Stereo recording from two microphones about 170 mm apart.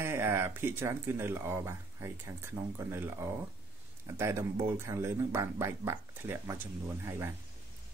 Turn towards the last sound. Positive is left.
turn(degrees=-15)  # may be behind; listen again after turning